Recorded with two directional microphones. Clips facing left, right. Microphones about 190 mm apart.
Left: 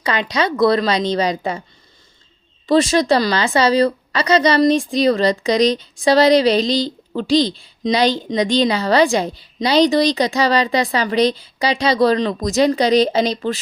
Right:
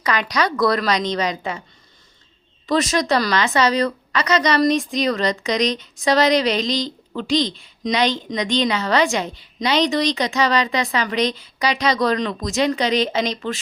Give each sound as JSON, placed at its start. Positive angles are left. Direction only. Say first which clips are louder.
{"t": 0.0, "sound": "a woman's voice", "louder": "left 2 dB", "side_deg": 25}
{"t": 2.6, "sound": "a woman's voice", "louder": "left 5 dB", "side_deg": 30}